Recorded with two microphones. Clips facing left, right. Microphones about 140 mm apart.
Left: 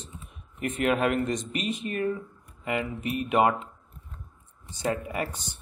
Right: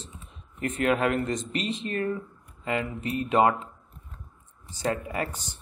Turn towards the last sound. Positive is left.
turn(degrees=20)  # may be behind; listen again after turning